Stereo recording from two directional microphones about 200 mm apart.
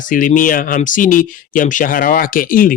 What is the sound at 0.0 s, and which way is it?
Speech, 40° left (ahead or behind).